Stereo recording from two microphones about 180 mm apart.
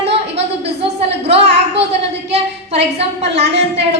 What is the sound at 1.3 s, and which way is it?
A woman's voice, 35° right (ahead or behind).